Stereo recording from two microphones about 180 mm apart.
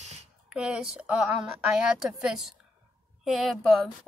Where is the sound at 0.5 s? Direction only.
5° right (ahead or behind).